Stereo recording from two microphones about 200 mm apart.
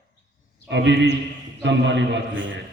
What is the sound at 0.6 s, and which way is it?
A man's voice, 60° right (ahead or behind).